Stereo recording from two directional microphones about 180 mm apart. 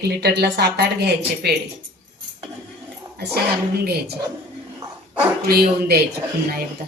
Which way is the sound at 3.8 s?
60° right (ahead or behind).